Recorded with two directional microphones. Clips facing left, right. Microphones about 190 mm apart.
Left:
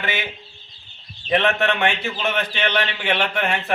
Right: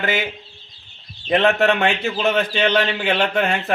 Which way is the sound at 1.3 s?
35° right (ahead or behind).